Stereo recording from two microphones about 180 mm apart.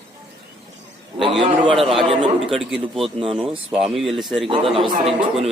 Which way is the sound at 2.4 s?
Centre (ahead or behind).